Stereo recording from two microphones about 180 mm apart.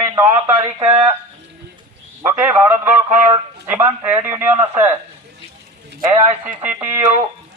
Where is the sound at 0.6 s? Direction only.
35° right (ahead or behind).